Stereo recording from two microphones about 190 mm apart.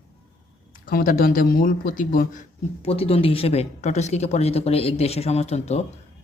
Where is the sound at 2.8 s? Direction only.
30° left (ahead or behind).